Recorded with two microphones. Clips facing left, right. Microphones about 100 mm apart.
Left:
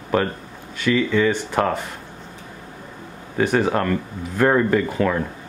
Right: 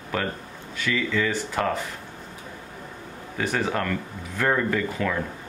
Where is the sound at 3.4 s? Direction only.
45° left (ahead or behind).